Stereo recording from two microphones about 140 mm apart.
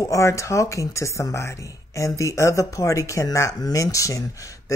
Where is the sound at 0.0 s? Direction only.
20° left (ahead or behind).